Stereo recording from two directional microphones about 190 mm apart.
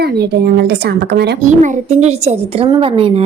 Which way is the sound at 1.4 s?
40° right (ahead or behind).